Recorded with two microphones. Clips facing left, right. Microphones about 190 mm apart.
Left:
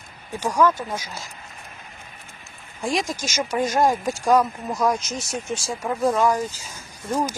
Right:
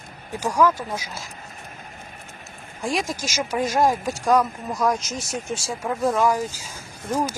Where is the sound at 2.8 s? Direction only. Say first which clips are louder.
Left 1 dB; centre (ahead or behind).